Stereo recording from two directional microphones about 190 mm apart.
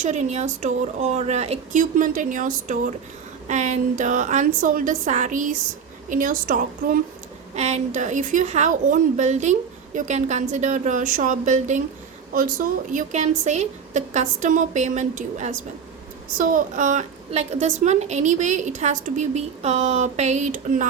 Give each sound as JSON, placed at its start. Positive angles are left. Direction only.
{"t": 0.0, "sound": "a woman's voice", "side_deg": -35}
{"t": 7.5, "sound": "a woman's voice", "side_deg": -35}